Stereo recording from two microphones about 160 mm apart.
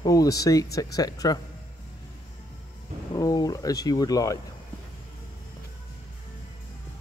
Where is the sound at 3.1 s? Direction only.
25° left (ahead or behind).